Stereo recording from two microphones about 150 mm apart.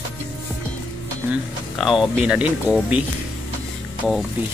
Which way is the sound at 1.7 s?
Centre (ahead or behind).